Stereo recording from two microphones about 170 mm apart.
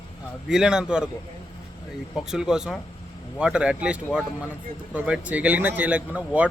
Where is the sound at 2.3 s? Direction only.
5° right (ahead or behind).